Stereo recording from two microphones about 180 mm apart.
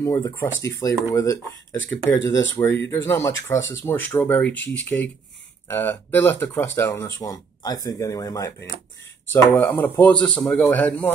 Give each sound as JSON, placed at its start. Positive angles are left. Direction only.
{"t": 0.0, "sound": "speech", "side_deg": 15}